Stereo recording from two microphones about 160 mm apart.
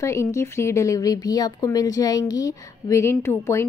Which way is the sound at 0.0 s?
20° left (ahead or behind).